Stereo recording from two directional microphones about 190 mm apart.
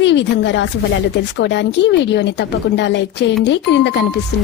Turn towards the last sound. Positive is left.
turn(degrees=65)  # may be behind; listen again after turning